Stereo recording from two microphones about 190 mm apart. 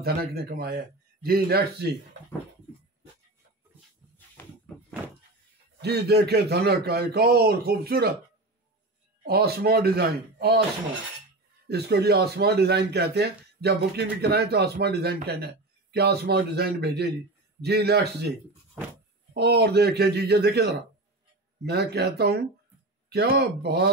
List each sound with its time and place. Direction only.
0.0 s a man's voice: 55° right (ahead or behind)
4.7 s a sound: 5° left (ahead or behind)
5.8 s speech: 60° right (ahead or behind)
9.2 s speech: 55° right (ahead or behind)
11.7 s speech: 55° right (ahead or behind)
19.3 s speech: 60° right (ahead or behind)